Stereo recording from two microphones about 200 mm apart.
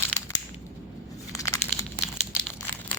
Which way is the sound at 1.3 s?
15° left (ahead or behind).